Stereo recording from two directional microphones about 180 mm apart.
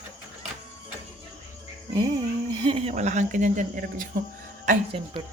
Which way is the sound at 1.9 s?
25° right (ahead or behind).